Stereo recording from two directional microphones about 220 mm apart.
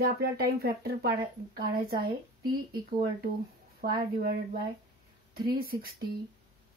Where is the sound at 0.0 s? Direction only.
45° right (ahead or behind).